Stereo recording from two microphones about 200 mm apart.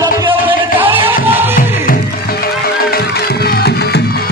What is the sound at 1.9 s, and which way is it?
Music, 50° left (ahead or behind).